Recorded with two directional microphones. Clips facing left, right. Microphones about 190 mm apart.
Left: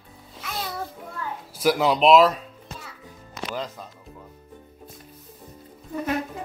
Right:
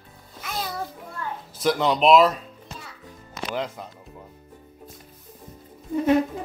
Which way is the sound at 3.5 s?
15° right (ahead or behind).